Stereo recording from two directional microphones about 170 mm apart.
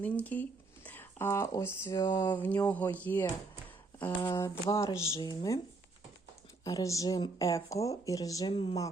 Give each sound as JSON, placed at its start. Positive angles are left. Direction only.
{"t": 0.0, "sound": "speech", "side_deg": 10}
{"t": 6.7, "sound": "speech", "side_deg": 20}